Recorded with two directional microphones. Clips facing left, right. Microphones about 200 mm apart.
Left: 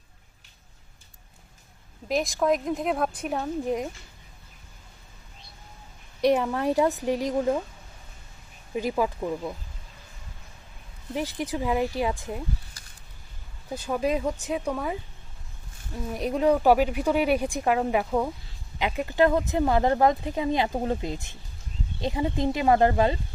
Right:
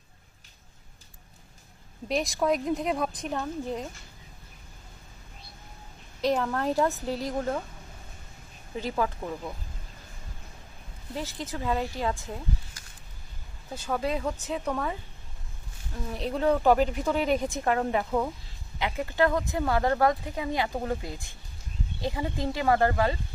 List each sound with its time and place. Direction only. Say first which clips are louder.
2.0 s a woman's voice: left 2 dB; centre (ahead or behind)
6.2 s a woman's voice: left 4 dB; 15° left (ahead or behind)
8.7 s a woman's voice: left 3 dB; 15° left (ahead or behind)
11.1 s a woman's voice: left 5 dB; 15° left (ahead or behind)
13.8 s a woman's voice: left 3 dB; 15° left (ahead or behind)
16.1 s a woman's voice: left 3 dB; 10° left (ahead or behind)